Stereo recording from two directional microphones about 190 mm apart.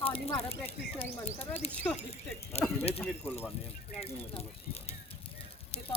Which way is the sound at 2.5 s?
35° left (ahead or behind).